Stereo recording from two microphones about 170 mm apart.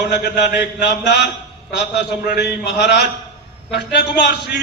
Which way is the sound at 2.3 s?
80° left.